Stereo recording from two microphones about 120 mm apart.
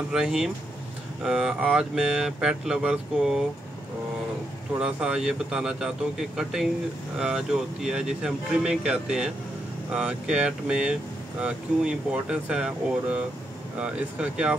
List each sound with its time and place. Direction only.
0.1 s speech: 5° right (ahead or behind)
4.7 s speech: 5° right (ahead or behind)